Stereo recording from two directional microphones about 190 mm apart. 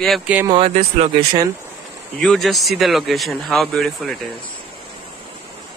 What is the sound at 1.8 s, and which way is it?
Speech, centre (ahead or behind).